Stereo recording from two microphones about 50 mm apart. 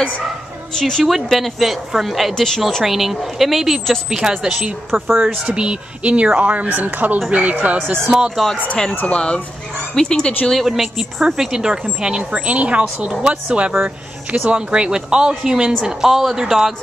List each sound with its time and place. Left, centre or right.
0.7 s speech: centre
1.0 s speech: centre
2.3 s speech: centre
2.8 s speech: centre
4.1 s speech: centre
5.5 s speech: right
6.7 s speech: right
8.1 s speech: centre
9.0 s speech: left
10.8 s speech: centre
12.3 s speech: right; by 16.7 s centre